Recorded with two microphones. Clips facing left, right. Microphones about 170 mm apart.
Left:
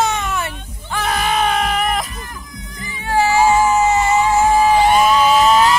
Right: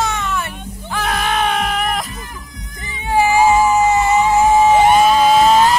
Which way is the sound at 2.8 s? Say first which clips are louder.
Right 1 dB; 15° right (ahead or behind).